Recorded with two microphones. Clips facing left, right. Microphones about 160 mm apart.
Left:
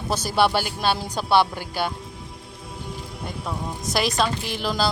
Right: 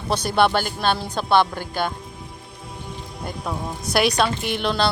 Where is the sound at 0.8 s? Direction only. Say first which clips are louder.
Right 1 dB; 10° left (ahead or behind).